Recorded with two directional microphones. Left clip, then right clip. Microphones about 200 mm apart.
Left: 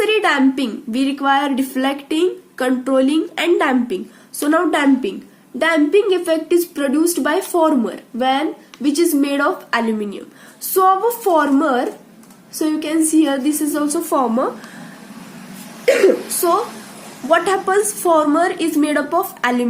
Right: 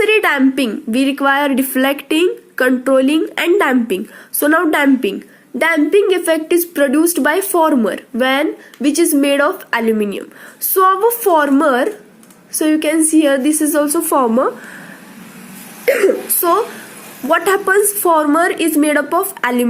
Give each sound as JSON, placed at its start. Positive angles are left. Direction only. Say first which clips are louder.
{"t": 0.0, "sound": "a woman's voice", "louder": "right 3 dB", "side_deg": -35}
{"t": 15.9, "sound": "a woman's voice", "louder": "even", "side_deg": -35}